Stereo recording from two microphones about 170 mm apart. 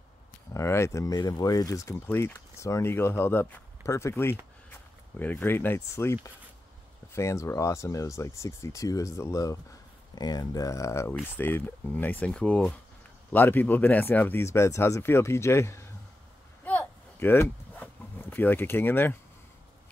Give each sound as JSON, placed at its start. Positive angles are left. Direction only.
{"t": 0.5, "sound": "speech", "side_deg": 15}
{"t": 7.2, "sound": "speech", "side_deg": 15}
{"t": 16.6, "sound": "a sound", "side_deg": 10}